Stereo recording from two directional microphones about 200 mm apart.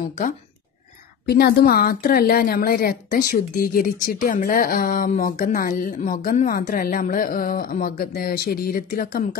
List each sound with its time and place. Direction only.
1.2 s a woman's voice: 50° left (ahead or behind)